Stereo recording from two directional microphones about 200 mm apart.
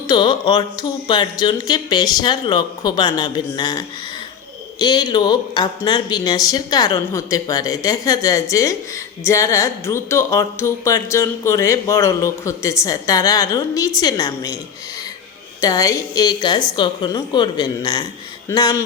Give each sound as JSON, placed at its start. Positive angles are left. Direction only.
{"t": 0.1, "sound": "speech", "side_deg": 20}
{"t": 15.6, "sound": "speech", "side_deg": 15}